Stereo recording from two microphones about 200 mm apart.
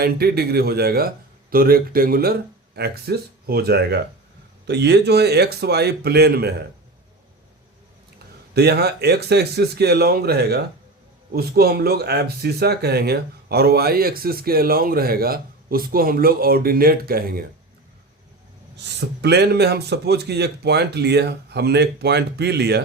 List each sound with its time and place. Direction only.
0.0 s speech: 50° right (ahead or behind)
8.5 s speech: 55° right (ahead or behind)
18.8 s speech: 60° right (ahead or behind)